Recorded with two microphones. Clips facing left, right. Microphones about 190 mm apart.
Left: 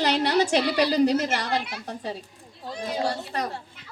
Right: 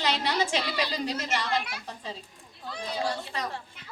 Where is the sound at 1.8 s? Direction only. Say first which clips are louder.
Left 6 dB; 65° left (ahead or behind).